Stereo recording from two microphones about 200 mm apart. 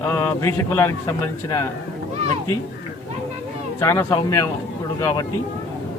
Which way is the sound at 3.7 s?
15° left (ahead or behind).